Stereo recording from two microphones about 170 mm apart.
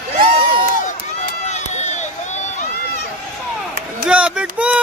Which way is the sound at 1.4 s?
40° left (ahead or behind).